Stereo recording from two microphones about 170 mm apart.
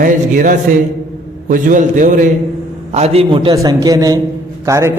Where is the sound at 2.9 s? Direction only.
35° right (ahead or behind); by 4.9 s 15° right (ahead or behind).